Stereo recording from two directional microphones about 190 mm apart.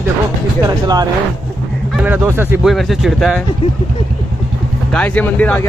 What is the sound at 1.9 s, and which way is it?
Speech, 10° right (ahead or behind).